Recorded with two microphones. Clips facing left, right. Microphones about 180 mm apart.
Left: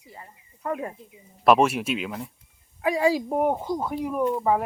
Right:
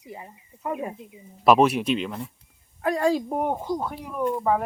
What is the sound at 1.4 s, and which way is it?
Speech, centre (ahead or behind).